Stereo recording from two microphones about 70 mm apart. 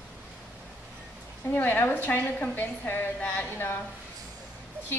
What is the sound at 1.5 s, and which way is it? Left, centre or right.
A woman's voice, left.